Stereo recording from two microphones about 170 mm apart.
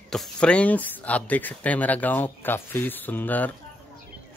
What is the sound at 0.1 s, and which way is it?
Speech, 5° left (ahead or behind).